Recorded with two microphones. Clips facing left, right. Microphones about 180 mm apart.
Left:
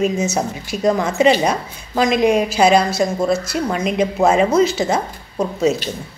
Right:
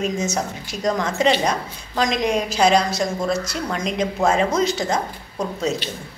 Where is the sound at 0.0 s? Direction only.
10° left (ahead or behind).